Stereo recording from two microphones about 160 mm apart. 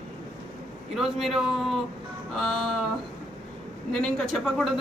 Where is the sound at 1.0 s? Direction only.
Centre (ahead or behind).